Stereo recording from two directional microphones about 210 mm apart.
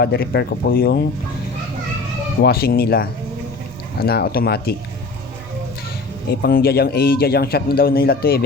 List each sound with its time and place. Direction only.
0.0 s a man's voice: 50° left (ahead or behind)
2.4 s a man's voice: 45° left (ahead or behind)
6.4 s a man's voice: 45° left (ahead or behind)